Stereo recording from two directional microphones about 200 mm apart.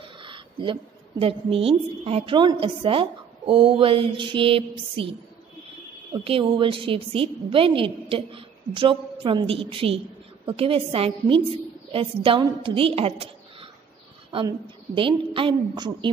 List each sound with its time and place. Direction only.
0.2 s a sound: 25° right (ahead or behind)
1.2 s a woman's voice: 30° right (ahead or behind)
6.2 s a woman's voice: 25° right (ahead or behind)